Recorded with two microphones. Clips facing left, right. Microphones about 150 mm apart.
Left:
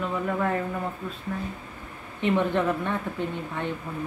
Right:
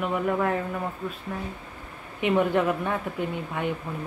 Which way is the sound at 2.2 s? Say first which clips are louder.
Right 1 dB; 10° right (ahead or behind).